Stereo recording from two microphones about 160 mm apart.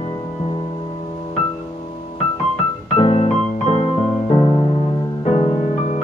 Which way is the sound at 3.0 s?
40° left (ahead or behind).